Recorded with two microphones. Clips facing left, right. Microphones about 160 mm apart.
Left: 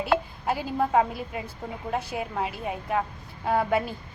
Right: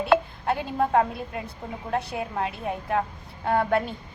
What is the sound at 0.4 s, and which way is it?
A woman's voice, centre (ahead or behind).